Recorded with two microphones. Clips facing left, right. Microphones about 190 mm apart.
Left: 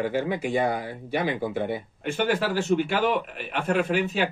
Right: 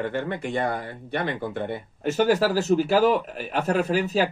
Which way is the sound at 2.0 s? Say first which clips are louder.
Right 5 dB; 40° right (ahead or behind).